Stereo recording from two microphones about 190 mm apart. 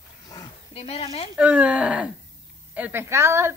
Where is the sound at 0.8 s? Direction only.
30° left (ahead or behind).